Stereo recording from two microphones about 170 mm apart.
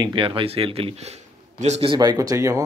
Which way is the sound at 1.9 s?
25° right (ahead or behind).